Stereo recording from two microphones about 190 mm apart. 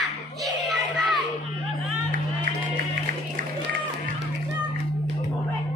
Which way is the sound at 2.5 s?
50° right (ahead or behind).